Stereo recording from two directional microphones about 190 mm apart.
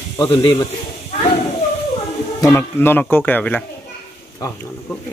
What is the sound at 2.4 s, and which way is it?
Speech, 10° left (ahead or behind).